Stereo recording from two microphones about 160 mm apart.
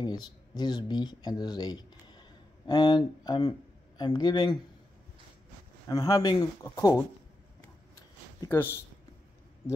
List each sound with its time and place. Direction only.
0.0 s speech: 25° left (ahead or behind)
5.9 s speech: 20° left (ahead or behind)
8.4 s speech: 15° left (ahead or behind)